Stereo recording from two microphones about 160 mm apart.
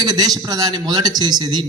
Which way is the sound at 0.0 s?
25° right (ahead or behind).